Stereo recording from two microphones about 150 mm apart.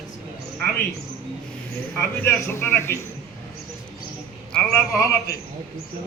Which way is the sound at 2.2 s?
15° left (ahead or behind).